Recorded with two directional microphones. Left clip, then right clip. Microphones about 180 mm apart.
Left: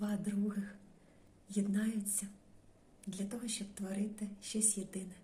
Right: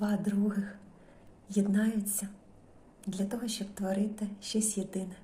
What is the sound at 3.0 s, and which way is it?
A woman's voice, 15° left (ahead or behind).